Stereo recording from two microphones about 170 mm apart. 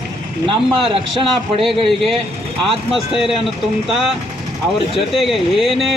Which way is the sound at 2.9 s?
Centre (ahead or behind).